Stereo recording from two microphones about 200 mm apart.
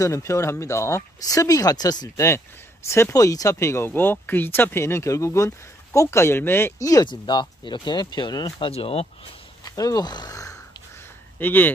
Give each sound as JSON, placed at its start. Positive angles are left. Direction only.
{"t": 0.0, "sound": "speech", "side_deg": 15}
{"t": 9.6, "sound": "a sound", "side_deg": 20}
{"t": 11.3, "sound": "speech", "side_deg": 10}